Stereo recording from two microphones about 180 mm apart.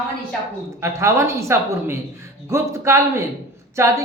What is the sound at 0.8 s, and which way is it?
Speech, 15° right (ahead or behind).